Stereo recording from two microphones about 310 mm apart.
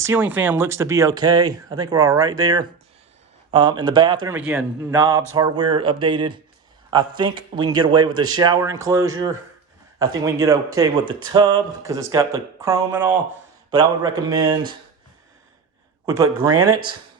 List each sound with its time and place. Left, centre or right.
0.0 s speech: centre
16.0 s speech: centre
16.6 s speech: right